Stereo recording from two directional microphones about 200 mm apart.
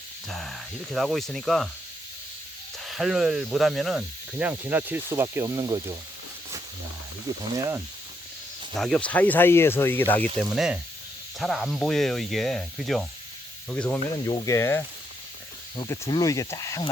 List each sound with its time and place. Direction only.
0.3 s speech: centre (ahead or behind)
2.8 s speech: centre (ahead or behind); by 5.8 s 15° right (ahead or behind)
8.7 s speech: centre (ahead or behind)
10.3 s speech: 5° right (ahead or behind); by 16.9 s 20° left (ahead or behind)